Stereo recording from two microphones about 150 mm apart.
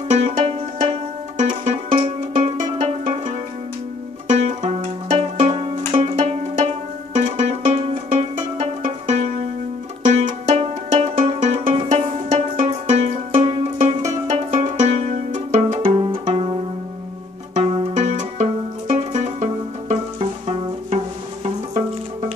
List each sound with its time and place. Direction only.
0.1 s music: 50° right (ahead or behind)
10.6 s music: 45° right (ahead or behind)
15.8 s music: 35° right (ahead or behind)
17.9 s music: 50° right (ahead or behind)